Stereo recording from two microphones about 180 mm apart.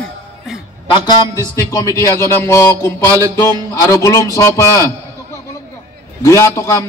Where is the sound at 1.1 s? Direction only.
20° left (ahead or behind).